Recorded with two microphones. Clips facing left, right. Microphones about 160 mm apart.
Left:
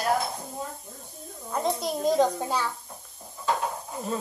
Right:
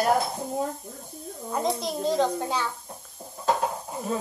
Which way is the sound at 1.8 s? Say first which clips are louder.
Left 4 dB; 10° left (ahead or behind).